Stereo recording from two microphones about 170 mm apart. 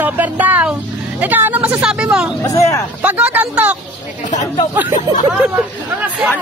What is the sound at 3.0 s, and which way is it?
Speech, 10° right (ahead or behind).